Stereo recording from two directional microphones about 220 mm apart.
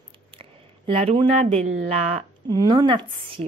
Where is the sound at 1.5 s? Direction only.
30° right (ahead or behind).